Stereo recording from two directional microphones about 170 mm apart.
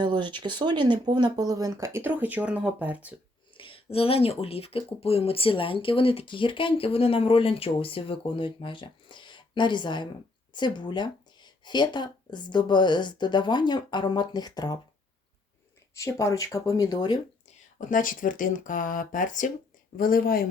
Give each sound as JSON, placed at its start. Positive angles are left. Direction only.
{"t": 0.0, "sound": "speech", "side_deg": -25}
{"t": 3.5, "sound": "a sound", "side_deg": 30}
{"t": 3.9, "sound": "speech", "side_deg": 35}
{"t": 16.0, "sound": "speech", "side_deg": 20}
{"t": 17.7, "sound": "a woman's voice", "side_deg": 50}